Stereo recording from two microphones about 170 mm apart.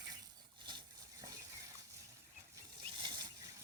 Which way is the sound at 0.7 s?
25° right (ahead or behind).